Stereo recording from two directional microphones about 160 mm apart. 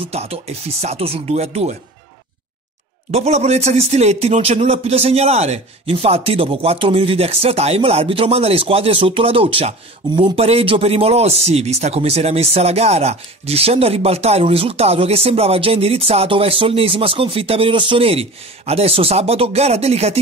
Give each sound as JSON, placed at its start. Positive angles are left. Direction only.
{"t": 0.0, "sound": "speech", "side_deg": -40}
{"t": 3.1, "sound": "speech", "side_deg": -40}